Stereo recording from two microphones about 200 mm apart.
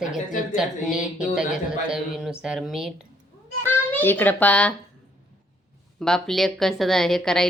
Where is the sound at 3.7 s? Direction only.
10° left (ahead or behind).